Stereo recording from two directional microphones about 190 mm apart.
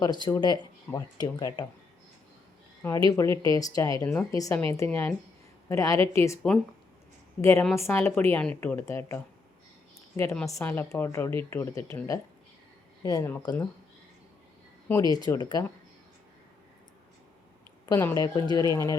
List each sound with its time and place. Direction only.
0.0 s speech: 20° left (ahead or behind)
2.8 s speech: 20° left (ahead or behind)
7.4 s speech: 15° left (ahead or behind)
14.8 s speech: 15° left (ahead or behind)
17.8 s speech: 15° left (ahead or behind)